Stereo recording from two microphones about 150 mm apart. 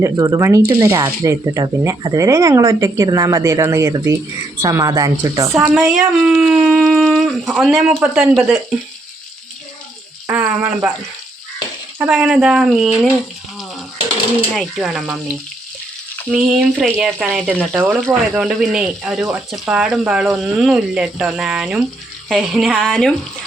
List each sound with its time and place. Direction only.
0.0 s speech: 20° right (ahead or behind)
5.7 s speech: 5° right (ahead or behind)
10.4 s speech: 20° right (ahead or behind)
11.9 s speech: 5° right (ahead or behind)
14.5 s speech: centre (ahead or behind)
16.3 s speech: 5° right (ahead or behind)